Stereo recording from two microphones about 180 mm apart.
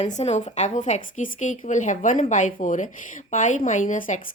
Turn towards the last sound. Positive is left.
turn(degrees=45)  # may be behind; listen again after turning